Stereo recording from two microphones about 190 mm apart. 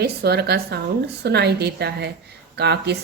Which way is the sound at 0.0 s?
60° right (ahead or behind).